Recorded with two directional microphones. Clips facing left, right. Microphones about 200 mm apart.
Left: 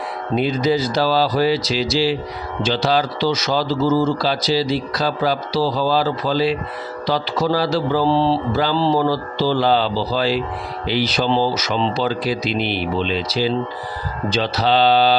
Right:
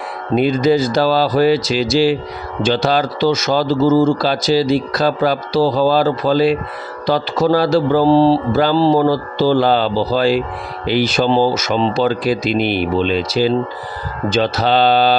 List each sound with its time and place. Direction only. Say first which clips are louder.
0.3 s a man's voice: right 5 dB; 50° right (ahead or behind)